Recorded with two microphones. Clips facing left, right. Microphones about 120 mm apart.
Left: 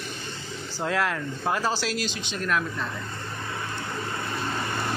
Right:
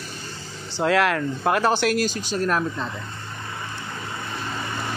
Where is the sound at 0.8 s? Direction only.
75° right (ahead or behind); by 2.1 s 55° right (ahead or behind).